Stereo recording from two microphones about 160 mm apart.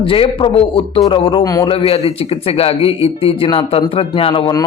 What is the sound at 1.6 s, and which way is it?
A man's voice, 35° left (ahead or behind).